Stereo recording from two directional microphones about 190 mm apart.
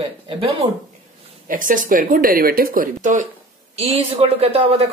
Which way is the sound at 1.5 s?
45° right (ahead or behind).